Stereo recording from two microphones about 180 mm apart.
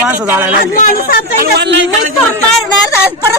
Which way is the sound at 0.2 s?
10° right (ahead or behind).